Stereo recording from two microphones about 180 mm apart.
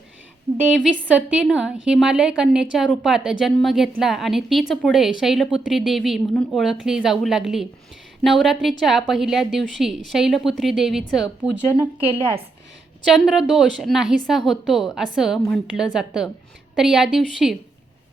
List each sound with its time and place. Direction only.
0.5 s a woman's voice: 5° right (ahead or behind)
12.0 s a woman's voice: 30° right (ahead or behind)
13.1 s a woman's voice: centre (ahead or behind)